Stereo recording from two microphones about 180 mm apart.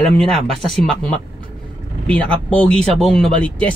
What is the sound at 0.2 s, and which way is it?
Speech, centre (ahead or behind).